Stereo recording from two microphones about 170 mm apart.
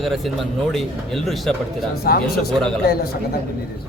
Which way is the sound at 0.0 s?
Centre (ahead or behind).